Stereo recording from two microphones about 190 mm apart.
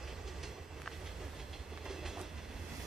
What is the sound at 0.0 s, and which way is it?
Train, centre (ahead or behind).